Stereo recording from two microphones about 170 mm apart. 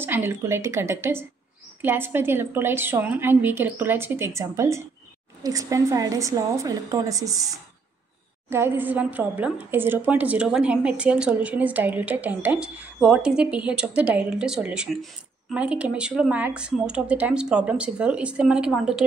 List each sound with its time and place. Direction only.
0.0 s a woman's voice: 15° right (ahead or behind)